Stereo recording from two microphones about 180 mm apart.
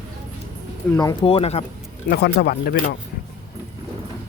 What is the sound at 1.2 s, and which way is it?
Speech, 35° left (ahead or behind).